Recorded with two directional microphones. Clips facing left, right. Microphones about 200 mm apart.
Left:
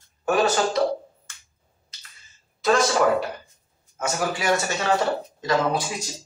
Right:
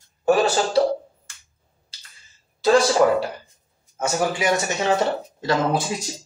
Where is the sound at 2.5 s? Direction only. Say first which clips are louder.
Right 4 dB; 30° right (ahead or behind).